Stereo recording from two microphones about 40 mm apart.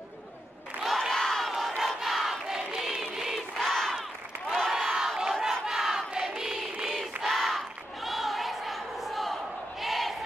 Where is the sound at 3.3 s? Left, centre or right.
Centre.